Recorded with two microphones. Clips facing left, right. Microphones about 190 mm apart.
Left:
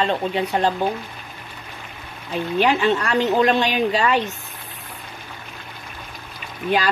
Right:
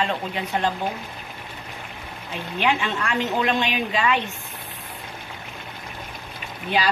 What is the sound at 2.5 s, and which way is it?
A woman's voice, 35° left (ahead or behind).